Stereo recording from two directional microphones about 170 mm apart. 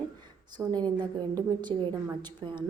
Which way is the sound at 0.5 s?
25° right (ahead or behind).